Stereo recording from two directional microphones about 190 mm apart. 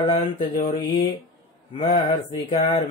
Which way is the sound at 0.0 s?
30° left (ahead or behind).